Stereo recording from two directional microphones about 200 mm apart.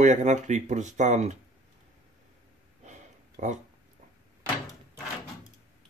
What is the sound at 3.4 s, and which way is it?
Speech, 35° right (ahead or behind).